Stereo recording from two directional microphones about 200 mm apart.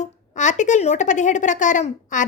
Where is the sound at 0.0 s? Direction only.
35° left (ahead or behind).